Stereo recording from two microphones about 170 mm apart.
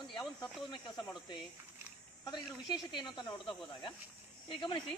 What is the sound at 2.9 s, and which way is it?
Speech, 25° left (ahead or behind).